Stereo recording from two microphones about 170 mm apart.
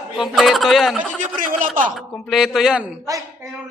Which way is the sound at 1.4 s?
50° right (ahead or behind).